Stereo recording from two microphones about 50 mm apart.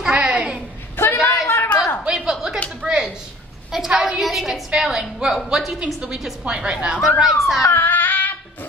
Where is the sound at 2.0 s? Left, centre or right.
Centre.